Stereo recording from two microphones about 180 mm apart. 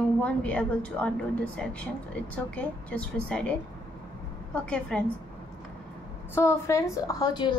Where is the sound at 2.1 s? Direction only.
5° left (ahead or behind).